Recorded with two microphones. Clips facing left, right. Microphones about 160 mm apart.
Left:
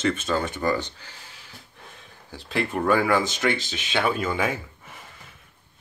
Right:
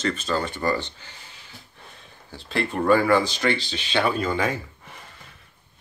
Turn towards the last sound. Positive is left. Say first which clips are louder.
# right 1 dB
turn(degrees=5)  # may be behind; listen again after turning